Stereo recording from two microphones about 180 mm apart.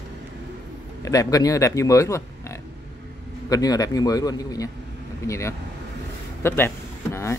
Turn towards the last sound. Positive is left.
turn(degrees=15)  # may be behind; listen again after turning